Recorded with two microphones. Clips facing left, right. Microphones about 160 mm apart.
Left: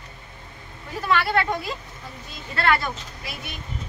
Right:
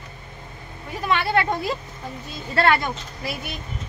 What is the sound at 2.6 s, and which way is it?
Speech, 30° right (ahead or behind).